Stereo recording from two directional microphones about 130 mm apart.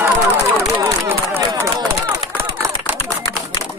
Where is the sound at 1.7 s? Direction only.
30° right (ahead or behind).